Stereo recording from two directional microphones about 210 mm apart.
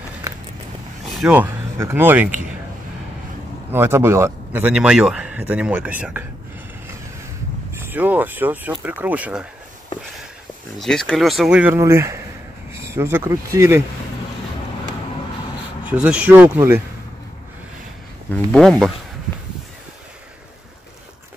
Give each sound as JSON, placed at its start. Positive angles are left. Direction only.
{"t": 0.2, "sound": "a sound", "side_deg": -15}
{"t": 1.0, "sound": "speech", "side_deg": 0}
{"t": 3.7, "sound": "speech", "side_deg": -10}
{"t": 7.7, "sound": "speech", "side_deg": -10}
{"t": 10.8, "sound": "speech", "side_deg": 5}
{"t": 15.9, "sound": "speech", "side_deg": -5}
{"t": 18.3, "sound": "speech", "side_deg": 0}